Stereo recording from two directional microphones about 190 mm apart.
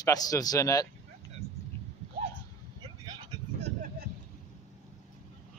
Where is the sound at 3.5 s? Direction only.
35° right (ahead or behind).